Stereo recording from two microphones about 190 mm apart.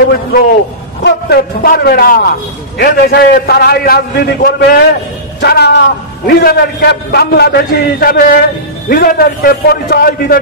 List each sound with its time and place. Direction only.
1.0 s a man's voice: 55° left (ahead or behind)